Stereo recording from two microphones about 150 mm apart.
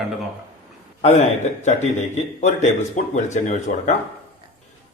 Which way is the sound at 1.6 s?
50° left (ahead or behind).